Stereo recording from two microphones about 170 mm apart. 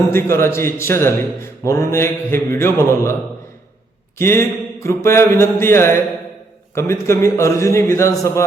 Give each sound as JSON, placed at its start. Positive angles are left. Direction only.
{"t": 0.1, "sound": "a man's voice", "side_deg": 15}
{"t": 4.2, "sound": "a man's voice", "side_deg": 15}